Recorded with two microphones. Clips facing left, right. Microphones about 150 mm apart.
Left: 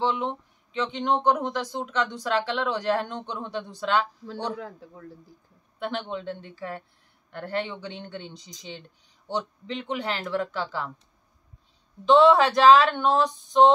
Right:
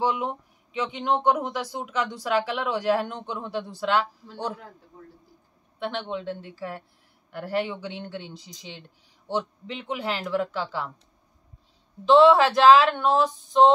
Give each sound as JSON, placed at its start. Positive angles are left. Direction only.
{"t": 0.0, "sound": "speech", "side_deg": -10}
{"t": 5.8, "sound": "speech", "side_deg": 0}
{"t": 12.1, "sound": "speech", "side_deg": 0}